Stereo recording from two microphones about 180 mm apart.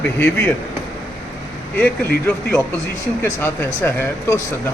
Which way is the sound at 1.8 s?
10° left (ahead or behind).